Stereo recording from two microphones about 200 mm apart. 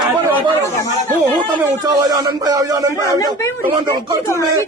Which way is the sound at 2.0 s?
20° right (ahead or behind).